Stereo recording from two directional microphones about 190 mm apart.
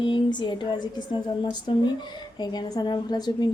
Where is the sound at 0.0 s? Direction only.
25° left (ahead or behind).